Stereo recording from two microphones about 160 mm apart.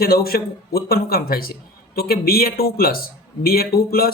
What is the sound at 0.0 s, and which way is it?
Speech, 70° left (ahead or behind).